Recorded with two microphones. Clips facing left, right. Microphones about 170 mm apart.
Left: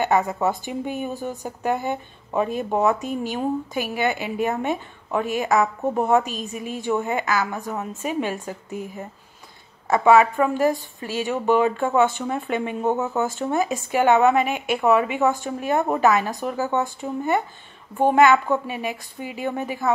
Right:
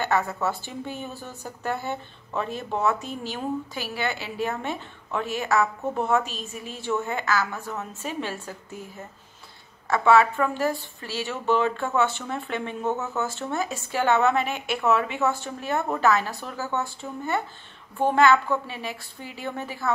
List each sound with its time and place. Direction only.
0.0 s speech: 15° left (ahead or behind)